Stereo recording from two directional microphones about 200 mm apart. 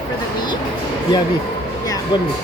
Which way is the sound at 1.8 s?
20° left (ahead or behind).